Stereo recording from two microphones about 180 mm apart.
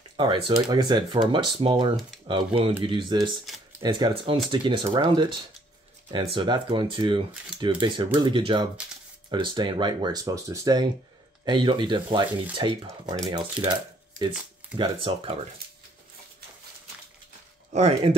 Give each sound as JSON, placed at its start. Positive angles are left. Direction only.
{"t": 0.2, "sound": "speech", "side_deg": -25}
{"t": 13.7, "sound": "a sound", "side_deg": -25}
{"t": 14.8, "sound": "speech", "side_deg": -30}
{"t": 17.7, "sound": "speech", "side_deg": -35}